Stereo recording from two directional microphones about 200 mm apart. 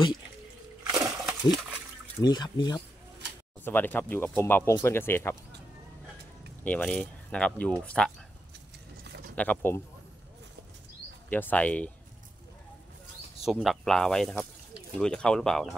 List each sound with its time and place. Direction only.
0.9 s a sound: 5° right (ahead or behind)
2.2 s speech: 20° left (ahead or behind)
3.6 s speech: 10° left (ahead or behind)
6.6 s speech: 5° left (ahead or behind)
9.3 s speech: 10° left (ahead or behind)
11.2 s speech: 10° left (ahead or behind)
13.4 s speech: centre (ahead or behind)